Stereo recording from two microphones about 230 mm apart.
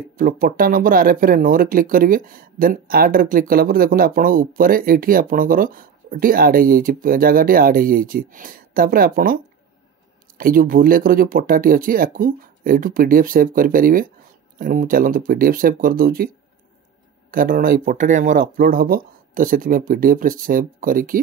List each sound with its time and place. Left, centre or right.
0.1 s speech: right
17.3 s speech: right